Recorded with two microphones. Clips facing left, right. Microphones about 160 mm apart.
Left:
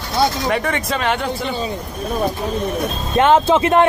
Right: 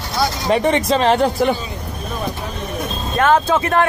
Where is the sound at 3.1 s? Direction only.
20° left (ahead or behind).